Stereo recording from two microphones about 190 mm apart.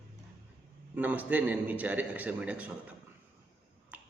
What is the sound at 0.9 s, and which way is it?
A man's voice, 10° right (ahead or behind).